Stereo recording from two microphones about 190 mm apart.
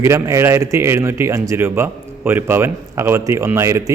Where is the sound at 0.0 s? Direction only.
15° right (ahead or behind).